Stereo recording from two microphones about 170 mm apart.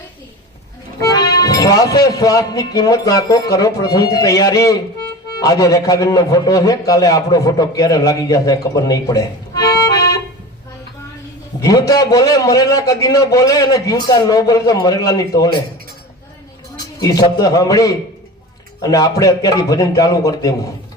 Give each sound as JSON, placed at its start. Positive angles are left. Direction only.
{"t": 1.0, "sound": "speech", "side_deg": 20}
{"t": 11.6, "sound": "a man's voice", "side_deg": 20}
{"t": 16.7, "sound": "a man's voice", "side_deg": 20}